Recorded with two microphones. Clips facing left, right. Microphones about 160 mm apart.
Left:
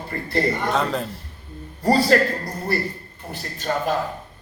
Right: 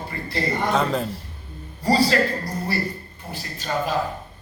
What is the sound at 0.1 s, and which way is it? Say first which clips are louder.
Speech: left 7 dB; 50° left (ahead or behind).